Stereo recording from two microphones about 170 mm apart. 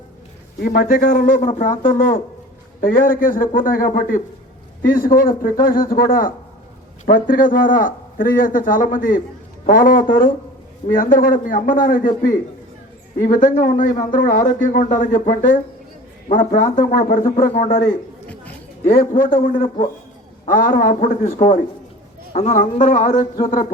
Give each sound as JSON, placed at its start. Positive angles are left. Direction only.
{"t": 0.6, "sound": "a man's voice", "side_deg": 55}
{"t": 16.3, "sound": "a man's voice", "side_deg": 50}
{"t": 19.6, "sound": "a man's voice", "side_deg": 35}
{"t": 20.4, "sound": "a man's voice", "side_deg": 50}
{"t": 22.3, "sound": "a man's voice", "side_deg": 40}